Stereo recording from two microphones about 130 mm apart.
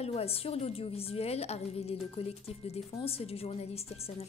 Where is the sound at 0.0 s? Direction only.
50° left (ahead or behind).